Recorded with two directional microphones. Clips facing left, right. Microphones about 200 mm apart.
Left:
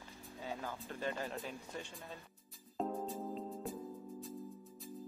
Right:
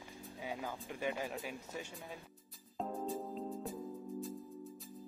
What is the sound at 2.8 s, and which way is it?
Music, centre (ahead or behind).